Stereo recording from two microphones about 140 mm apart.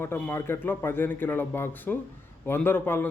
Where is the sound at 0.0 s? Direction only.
15° left (ahead or behind).